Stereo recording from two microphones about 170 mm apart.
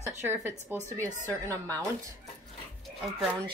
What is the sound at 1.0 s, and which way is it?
Speech, 15° right (ahead or behind).